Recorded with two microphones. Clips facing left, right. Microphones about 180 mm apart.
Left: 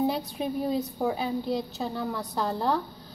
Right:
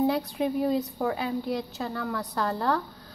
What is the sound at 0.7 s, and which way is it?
A woman's voice, 15° left (ahead or behind).